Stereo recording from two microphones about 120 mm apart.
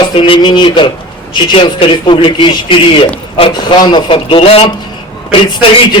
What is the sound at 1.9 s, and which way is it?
A man's voice, 45° left (ahead or behind).